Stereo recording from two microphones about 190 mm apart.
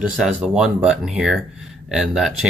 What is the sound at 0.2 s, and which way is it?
Speech, 5° right (ahead or behind).